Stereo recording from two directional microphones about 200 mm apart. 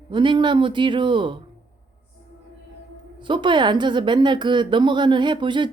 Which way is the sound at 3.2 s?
25° right (ahead or behind).